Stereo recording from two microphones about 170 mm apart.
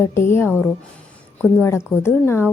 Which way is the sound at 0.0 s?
15° left (ahead or behind).